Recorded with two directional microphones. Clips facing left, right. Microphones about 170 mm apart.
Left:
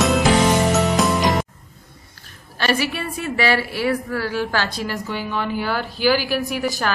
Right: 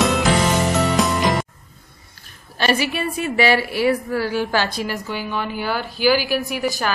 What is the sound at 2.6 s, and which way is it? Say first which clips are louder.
A woman's voice: right 1 dB; 20° right (ahead or behind).